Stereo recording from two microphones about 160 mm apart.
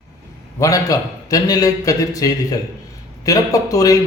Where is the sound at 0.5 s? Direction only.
20° left (ahead or behind).